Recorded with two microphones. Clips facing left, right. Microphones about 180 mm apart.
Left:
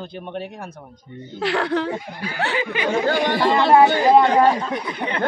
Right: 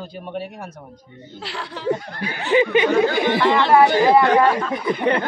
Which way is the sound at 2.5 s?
20° right (ahead or behind).